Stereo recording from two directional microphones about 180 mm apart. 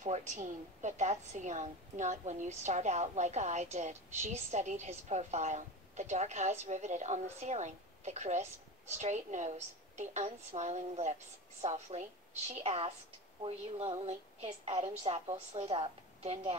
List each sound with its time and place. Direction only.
0.0 s a woman's voice: 40° right (ahead or behind)